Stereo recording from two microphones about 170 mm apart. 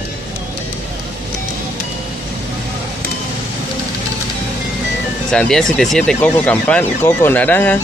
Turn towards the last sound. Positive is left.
turn(degrees=10)  # may be behind; listen again after turning